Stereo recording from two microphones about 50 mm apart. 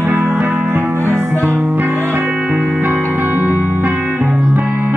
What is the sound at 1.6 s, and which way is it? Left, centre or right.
Music, right.